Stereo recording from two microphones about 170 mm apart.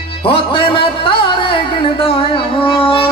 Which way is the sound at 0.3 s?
30° left (ahead or behind).